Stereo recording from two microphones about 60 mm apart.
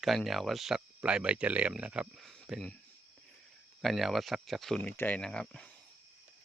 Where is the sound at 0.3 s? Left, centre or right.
Centre.